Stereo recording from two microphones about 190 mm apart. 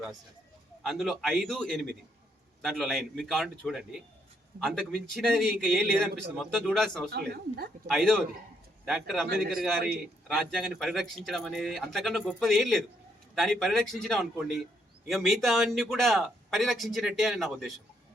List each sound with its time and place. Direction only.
0.8 s a man's voice: centre (ahead or behind)
7.1 s a woman's voice: 55° right (ahead or behind)
7.9 s a man's voice: centre (ahead or behind)
10.2 s a man's voice: centre (ahead or behind)